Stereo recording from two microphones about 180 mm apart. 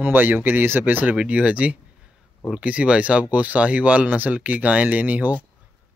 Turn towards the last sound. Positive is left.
turn(degrees=-10)  # may be behind; listen again after turning